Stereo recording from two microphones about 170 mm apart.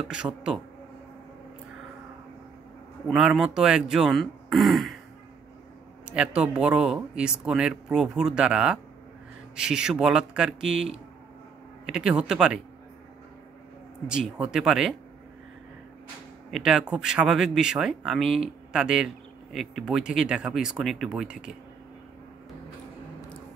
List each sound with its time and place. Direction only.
0.2 s speech: 15° right (ahead or behind)
3.1 s speech: centre (ahead or behind)
6.0 s speech: 5° right (ahead or behind)
14.0 s speech: 5° right (ahead or behind)
16.4 s speech: centre (ahead or behind)